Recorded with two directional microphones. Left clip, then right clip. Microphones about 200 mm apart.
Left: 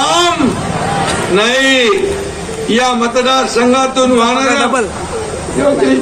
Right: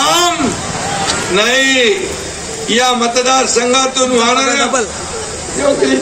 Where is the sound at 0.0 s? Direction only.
10° right (ahead or behind).